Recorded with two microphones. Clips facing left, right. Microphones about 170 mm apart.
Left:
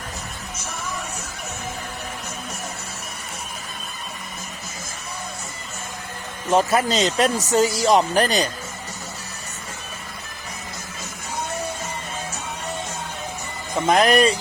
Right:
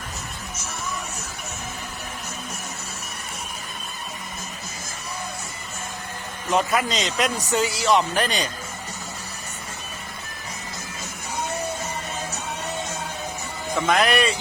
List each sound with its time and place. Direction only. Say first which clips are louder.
6.5 s speech: left 4 dB; 35° left (ahead or behind)
13.8 s speech: left 4 dB; 35° left (ahead or behind)